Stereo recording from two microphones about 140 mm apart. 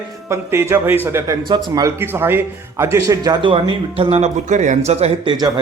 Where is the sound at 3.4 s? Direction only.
40° right (ahead or behind).